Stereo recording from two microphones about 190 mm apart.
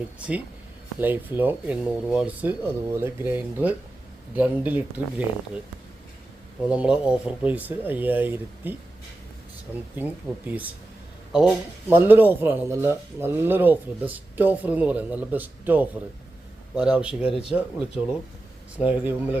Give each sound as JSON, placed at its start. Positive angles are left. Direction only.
{"t": 0.9, "sound": "speech", "side_deg": -10}
{"t": 6.7, "sound": "speech", "side_deg": -5}
{"t": 10.0, "sound": "speech", "side_deg": -10}
{"t": 17.2, "sound": "speech", "side_deg": 30}
{"t": 17.5, "sound": "speech", "side_deg": -5}